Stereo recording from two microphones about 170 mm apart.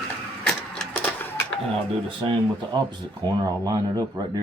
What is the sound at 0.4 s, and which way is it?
Printer, 5° left (ahead or behind).